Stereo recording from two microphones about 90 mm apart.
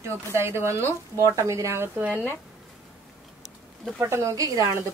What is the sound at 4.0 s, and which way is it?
Speech, 30° right (ahead or behind).